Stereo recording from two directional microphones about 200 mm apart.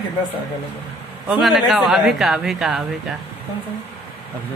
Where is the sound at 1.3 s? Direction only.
Centre (ahead or behind).